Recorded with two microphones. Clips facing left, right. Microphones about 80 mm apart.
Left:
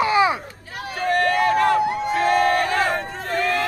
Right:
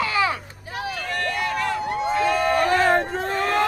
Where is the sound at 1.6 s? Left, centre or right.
Left.